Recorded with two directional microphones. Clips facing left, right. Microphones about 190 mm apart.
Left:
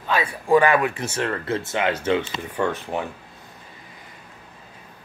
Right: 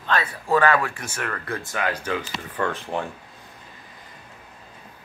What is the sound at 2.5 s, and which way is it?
Speech, 10° left (ahead or behind).